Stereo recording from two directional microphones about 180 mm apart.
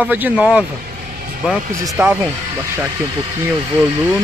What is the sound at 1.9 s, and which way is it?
Speech, 10° right (ahead or behind).